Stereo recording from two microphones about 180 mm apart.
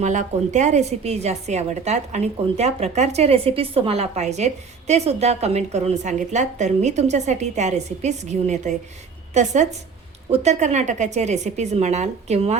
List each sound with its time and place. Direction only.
0.0 s a woman's voice: 40° right (ahead or behind)